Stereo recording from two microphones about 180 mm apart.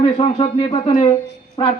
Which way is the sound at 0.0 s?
30° left (ahead or behind).